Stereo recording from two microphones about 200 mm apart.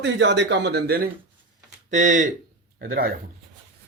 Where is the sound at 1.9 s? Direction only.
35° right (ahead or behind).